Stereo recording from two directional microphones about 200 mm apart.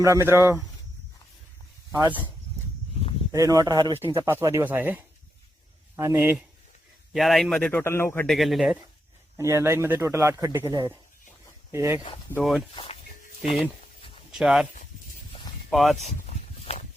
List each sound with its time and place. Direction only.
0.0 s speech: 15° right (ahead or behind)
1.9 s speech: 15° right (ahead or behind)
3.3 s a man's voice: 15° right (ahead or behind); by 8.4 s 10° left (ahead or behind)
8.4 s a man's voice: centre (ahead or behind)
9.4 s speech: 10° right (ahead or behind)
12.3 s a man's voice: centre (ahead or behind)
12.7 s speech: 25° left (ahead or behind)
14.3 s a man's voice: 5° right (ahead or behind)
15.7 s a man's voice: centre (ahead or behind)
16.0 s a sound: 35° left (ahead or behind)